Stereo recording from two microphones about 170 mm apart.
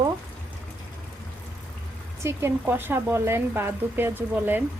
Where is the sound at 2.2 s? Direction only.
15° right (ahead or behind).